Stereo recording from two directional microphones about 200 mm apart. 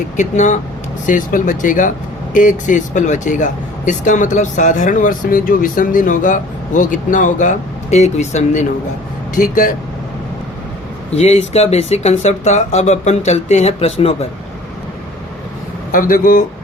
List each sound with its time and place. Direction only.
0.2 s speech: 35° left (ahead or behind)
11.1 s speech: 30° left (ahead or behind)
15.9 s speech: 45° left (ahead or behind)